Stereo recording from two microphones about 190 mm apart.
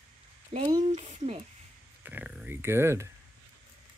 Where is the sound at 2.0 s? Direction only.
10° right (ahead or behind).